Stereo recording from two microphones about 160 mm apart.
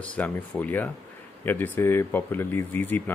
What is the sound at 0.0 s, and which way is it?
Speech, 10° left (ahead or behind).